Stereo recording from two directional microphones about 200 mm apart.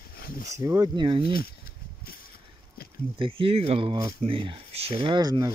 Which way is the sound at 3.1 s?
25° right (ahead or behind).